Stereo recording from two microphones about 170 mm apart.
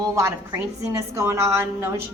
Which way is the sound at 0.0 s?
15° right (ahead or behind).